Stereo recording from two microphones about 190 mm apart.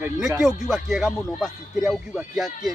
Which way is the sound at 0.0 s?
5° right (ahead or behind).